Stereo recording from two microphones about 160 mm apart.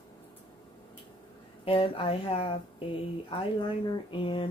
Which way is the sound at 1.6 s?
35° left (ahead or behind).